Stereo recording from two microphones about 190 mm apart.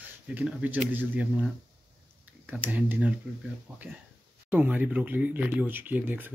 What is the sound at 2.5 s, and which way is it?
Speech, 10° right (ahead or behind).